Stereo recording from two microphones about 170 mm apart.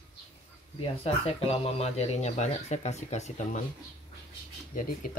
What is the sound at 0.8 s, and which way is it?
Speech, 35° left (ahead or behind).